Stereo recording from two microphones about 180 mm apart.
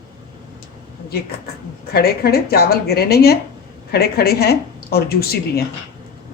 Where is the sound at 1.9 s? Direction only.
60° left (ahead or behind).